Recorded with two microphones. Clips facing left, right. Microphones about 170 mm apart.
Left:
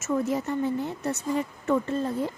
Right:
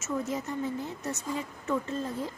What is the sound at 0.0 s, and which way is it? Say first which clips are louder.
A woman's voice: left 6 dB; 60° left (ahead or behind).